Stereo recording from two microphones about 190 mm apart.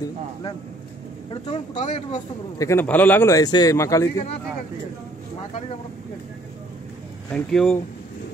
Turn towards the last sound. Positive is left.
turn(degrees=5)  # may be behind; listen again after turning